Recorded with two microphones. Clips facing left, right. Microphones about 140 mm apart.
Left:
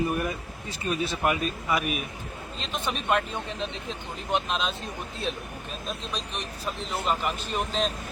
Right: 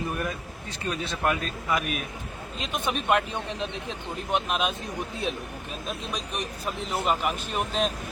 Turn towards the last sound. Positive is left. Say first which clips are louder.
# right 1 dB
turn(degrees=-5)  # may be behind; listen again after turning